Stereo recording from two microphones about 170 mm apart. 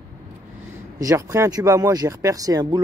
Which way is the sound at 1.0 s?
20° right (ahead or behind).